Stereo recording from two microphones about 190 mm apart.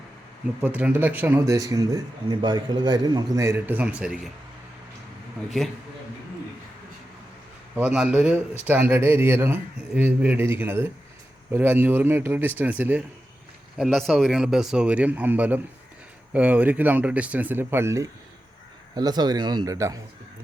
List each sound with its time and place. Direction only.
0.6 s speech: 10° right (ahead or behind)
7.8 s speech: 5° right (ahead or behind)